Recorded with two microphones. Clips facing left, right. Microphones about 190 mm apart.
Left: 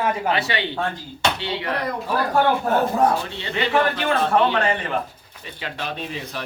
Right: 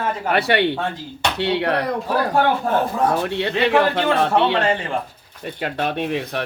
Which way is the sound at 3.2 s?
70° right (ahead or behind).